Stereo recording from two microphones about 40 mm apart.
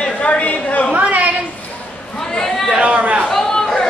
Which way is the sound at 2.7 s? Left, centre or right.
Right.